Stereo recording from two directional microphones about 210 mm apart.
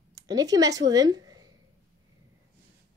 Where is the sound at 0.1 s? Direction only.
15° right (ahead or behind).